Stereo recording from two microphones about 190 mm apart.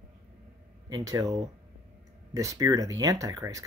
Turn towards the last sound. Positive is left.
turn(degrees=-15)  # may be behind; listen again after turning